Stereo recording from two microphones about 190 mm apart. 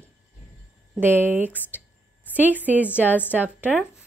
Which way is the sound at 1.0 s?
10° right (ahead or behind).